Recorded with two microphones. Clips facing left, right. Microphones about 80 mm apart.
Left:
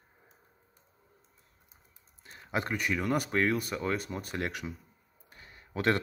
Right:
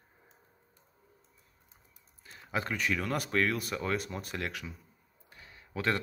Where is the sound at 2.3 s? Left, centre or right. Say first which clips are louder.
Left 2 dB; centre.